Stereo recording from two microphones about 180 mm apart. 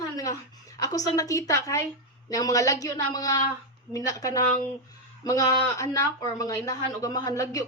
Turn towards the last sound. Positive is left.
turn(degrees=20)  # may be behind; listen again after turning